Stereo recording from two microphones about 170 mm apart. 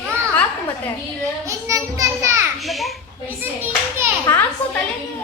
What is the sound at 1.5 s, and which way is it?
Child singing, 20° right (ahead or behind).